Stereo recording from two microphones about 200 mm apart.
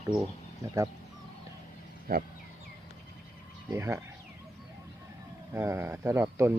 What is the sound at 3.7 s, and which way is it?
Speech, 15° right (ahead or behind).